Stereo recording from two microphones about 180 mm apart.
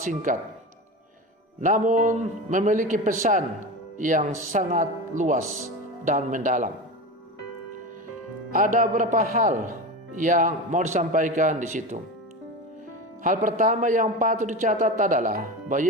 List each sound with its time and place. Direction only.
0.0 s a man's voice: 45° right (ahead or behind)
1.6 s a man's voice: 45° right (ahead or behind)
8.5 s a man's voice: 50° right (ahead or behind)
13.2 s a man's voice: 45° right (ahead or behind)